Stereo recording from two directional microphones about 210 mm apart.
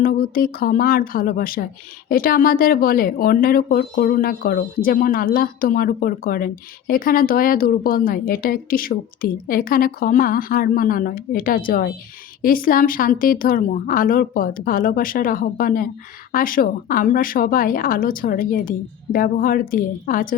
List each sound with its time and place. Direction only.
0.0 s speech: 45° left (ahead or behind)